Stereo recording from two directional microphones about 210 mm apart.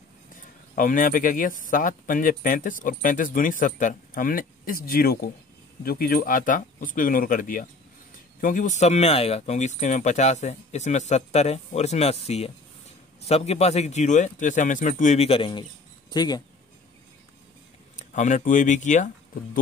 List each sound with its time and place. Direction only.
0.7 s speech: 40° left (ahead or behind); by 16.4 s 20° left (ahead or behind)
17.9 s speech: 35° left (ahead or behind)